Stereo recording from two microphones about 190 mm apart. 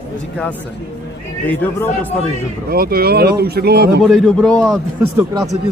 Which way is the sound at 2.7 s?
55° right (ahead or behind).